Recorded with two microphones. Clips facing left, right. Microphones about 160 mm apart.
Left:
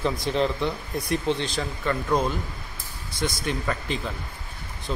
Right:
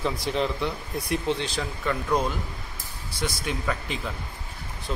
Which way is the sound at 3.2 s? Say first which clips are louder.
Left 2 dB; 5° right (ahead or behind).